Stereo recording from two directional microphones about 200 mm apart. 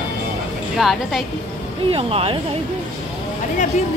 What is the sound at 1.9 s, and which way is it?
Speech, 30° right (ahead or behind).